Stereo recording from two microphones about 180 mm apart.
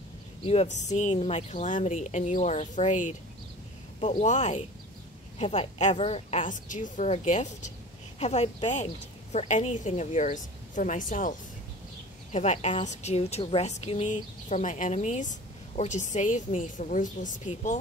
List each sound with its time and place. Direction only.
0.4 s a woman's voice: 35° left (ahead or behind)
4.2 s a woman's voice: 40° left (ahead or behind)